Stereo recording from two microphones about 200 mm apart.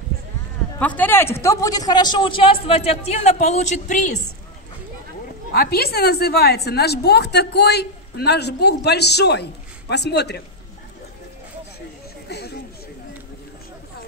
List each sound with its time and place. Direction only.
0.7 s speech: 10° left (ahead or behind); by 4.2 s 35° left (ahead or behind)
5.5 s a woman's voice: 50° left (ahead or behind)
12.3 s chatter: 55° left (ahead or behind)